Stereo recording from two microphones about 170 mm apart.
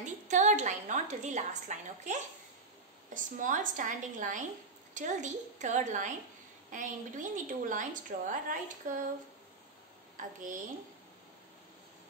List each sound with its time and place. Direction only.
0.0 s a woman's voice: 45° right (ahead or behind)
3.2 s a woman's voice: 50° right (ahead or behind)